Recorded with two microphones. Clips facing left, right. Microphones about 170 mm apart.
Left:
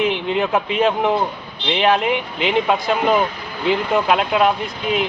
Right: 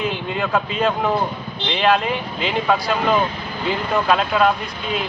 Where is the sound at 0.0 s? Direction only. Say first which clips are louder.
Left 4 dB; 20° left (ahead or behind).